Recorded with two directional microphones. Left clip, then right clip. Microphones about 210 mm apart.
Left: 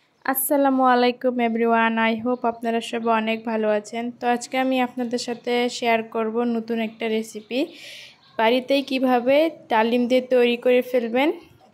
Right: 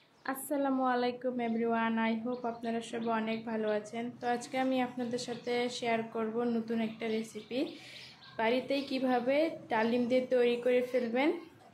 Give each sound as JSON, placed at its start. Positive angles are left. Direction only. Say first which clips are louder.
{"t": 0.2, "sound": "a woman's voice", "louder": "left 14 dB", "side_deg": 45}